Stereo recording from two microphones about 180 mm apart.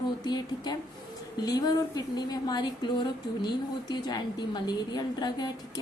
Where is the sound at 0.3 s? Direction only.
25° left (ahead or behind).